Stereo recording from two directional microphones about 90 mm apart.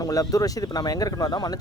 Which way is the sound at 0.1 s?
40° left (ahead or behind).